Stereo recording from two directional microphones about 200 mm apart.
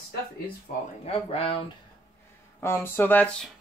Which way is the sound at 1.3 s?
30° left (ahead or behind).